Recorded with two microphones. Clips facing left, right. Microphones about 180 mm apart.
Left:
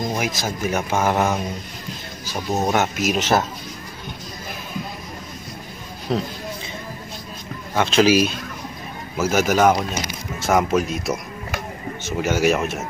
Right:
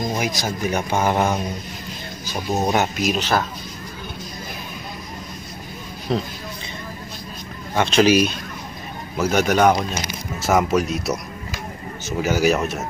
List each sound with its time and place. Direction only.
0.1 s speech: 5° left (ahead or behind)
3.2 s speech: 20° left (ahead or behind)
6.1 s speech: 5° left (ahead or behind)
7.7 s speech: centre (ahead or behind)